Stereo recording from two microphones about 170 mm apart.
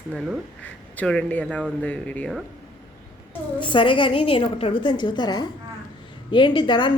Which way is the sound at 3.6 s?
30° left (ahead or behind).